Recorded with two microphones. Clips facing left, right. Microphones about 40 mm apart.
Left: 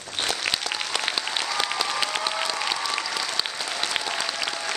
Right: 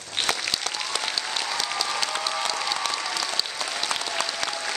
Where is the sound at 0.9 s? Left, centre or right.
Left.